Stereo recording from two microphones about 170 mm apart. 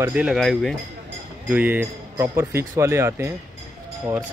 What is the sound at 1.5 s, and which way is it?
Speech, 10° right (ahead or behind).